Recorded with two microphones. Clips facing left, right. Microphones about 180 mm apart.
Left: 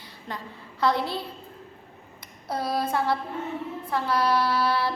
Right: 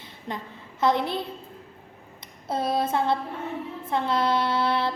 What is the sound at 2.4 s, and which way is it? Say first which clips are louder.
A woman's voice: right 2 dB; 25° right (ahead or behind).